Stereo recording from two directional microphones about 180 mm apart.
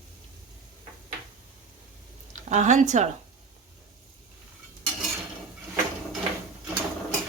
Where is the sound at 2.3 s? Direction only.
40° right (ahead or behind).